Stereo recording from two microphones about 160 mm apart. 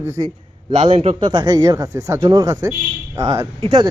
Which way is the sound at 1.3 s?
25° right (ahead or behind).